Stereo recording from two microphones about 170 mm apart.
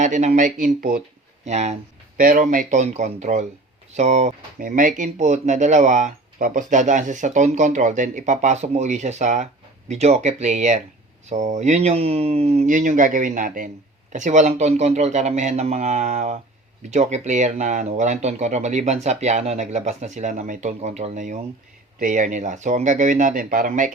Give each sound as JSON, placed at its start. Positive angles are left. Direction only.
{"t": 0.0, "sound": "speech", "side_deg": -45}
{"t": 1.5, "sound": "a man's voice", "side_deg": -40}
{"t": 2.1, "sound": "a man's voice", "side_deg": -55}